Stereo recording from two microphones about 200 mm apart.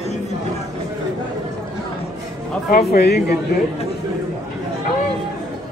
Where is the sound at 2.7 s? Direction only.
50° left (ahead or behind).